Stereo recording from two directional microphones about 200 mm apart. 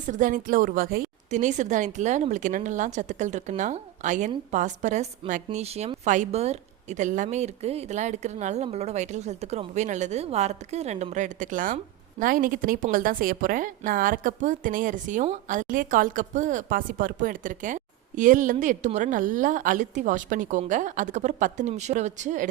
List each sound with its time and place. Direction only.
0.0 s a woman's voice: 40° right (ahead or behind)